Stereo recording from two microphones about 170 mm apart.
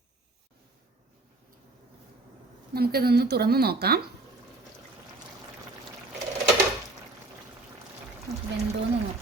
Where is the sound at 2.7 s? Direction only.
65° right (ahead or behind).